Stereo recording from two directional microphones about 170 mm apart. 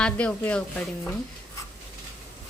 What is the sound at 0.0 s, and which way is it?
Speech, 5° left (ahead or behind).